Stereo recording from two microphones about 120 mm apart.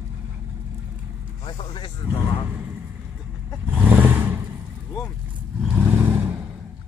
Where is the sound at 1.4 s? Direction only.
45° left (ahead or behind).